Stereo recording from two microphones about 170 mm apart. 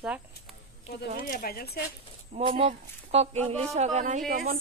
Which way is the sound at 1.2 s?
60° left (ahead or behind).